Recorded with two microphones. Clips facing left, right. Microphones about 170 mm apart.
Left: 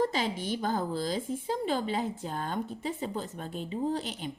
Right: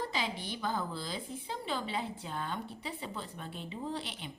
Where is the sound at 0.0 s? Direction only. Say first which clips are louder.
Left 7 dB; 45° left (ahead or behind).